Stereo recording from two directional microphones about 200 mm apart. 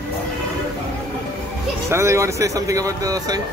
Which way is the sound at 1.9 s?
15° right (ahead or behind).